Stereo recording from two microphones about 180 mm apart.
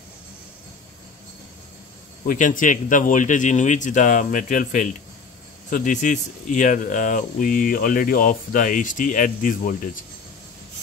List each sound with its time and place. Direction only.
2.2 s speech: 45° left (ahead or behind)